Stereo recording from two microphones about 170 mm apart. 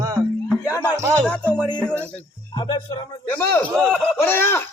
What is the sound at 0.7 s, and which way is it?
Music, 25° left (ahead or behind).